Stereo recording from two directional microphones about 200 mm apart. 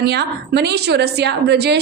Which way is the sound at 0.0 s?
55° right (ahead or behind).